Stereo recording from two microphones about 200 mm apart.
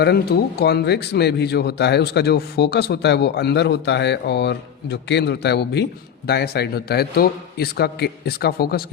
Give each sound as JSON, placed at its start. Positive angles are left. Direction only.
{"t": 0.0, "sound": "a man's voice", "side_deg": 55}